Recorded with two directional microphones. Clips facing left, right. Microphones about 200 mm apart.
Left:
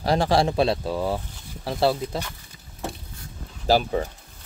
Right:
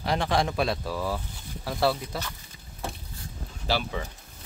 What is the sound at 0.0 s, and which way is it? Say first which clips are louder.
Speech: left 5 dB; 35° left (ahead or behind).